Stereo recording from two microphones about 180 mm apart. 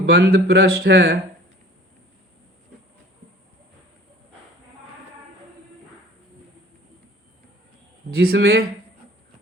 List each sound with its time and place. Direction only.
0.0 s speech: 65° right (ahead or behind)
8.1 s speech: 60° right (ahead or behind)